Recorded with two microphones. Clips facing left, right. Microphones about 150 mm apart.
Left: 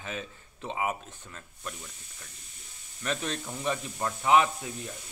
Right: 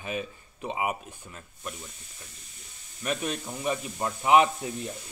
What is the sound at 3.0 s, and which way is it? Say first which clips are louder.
Speech: right 2 dB; 10° right (ahead or behind).